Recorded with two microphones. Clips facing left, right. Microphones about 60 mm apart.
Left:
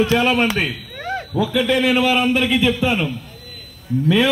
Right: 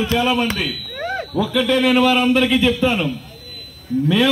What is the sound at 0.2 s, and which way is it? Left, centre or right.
Speech, left.